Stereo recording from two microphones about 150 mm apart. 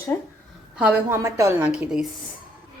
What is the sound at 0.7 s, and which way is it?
Speech, 15° right (ahead or behind).